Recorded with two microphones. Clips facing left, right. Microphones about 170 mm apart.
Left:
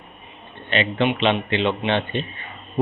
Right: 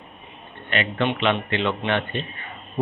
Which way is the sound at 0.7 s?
25° left (ahead or behind).